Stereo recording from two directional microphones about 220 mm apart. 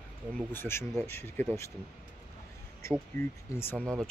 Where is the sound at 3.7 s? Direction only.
15° right (ahead or behind).